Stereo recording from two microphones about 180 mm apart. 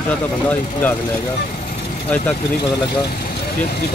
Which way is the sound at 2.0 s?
10° left (ahead or behind).